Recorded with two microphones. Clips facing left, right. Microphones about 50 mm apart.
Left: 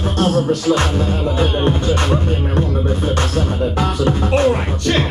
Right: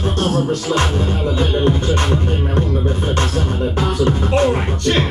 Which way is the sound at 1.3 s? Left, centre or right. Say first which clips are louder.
Right 1 dB; left.